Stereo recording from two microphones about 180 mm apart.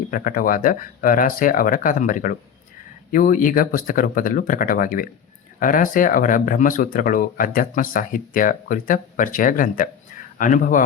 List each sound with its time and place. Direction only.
0.1 s speech: 50° left (ahead or behind)